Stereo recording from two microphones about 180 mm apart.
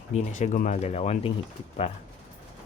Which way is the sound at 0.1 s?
40° left (ahead or behind).